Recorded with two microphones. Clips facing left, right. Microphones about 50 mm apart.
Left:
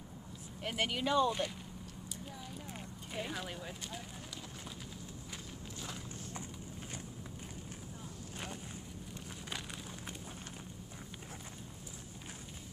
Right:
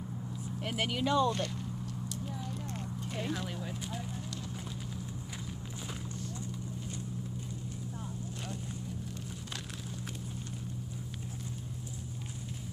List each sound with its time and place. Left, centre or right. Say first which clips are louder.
0.6 s speech: right 2 dB; centre
2.3 s clip-clop: right 6 dB; centre